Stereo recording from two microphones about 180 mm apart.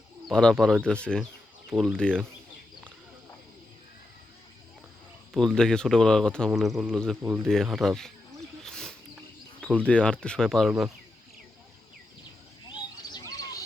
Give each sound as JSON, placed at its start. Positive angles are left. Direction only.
{"t": 0.3, "sound": "speech", "side_deg": 5}
{"t": 5.3, "sound": "speech", "side_deg": 0}
{"t": 8.6, "sound": "wild animals", "side_deg": 5}
{"t": 9.6, "sound": "speech", "side_deg": 5}
{"t": 13.1, "sound": "bird", "side_deg": 20}